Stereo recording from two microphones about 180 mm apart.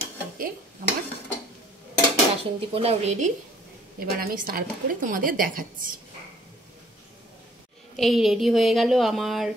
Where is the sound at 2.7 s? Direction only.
35° right (ahead or behind).